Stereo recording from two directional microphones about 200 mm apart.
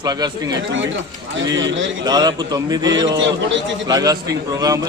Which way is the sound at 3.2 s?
65° right (ahead or behind).